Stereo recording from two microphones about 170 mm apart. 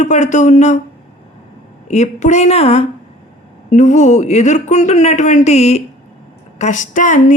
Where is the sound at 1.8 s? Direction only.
40° left (ahead or behind).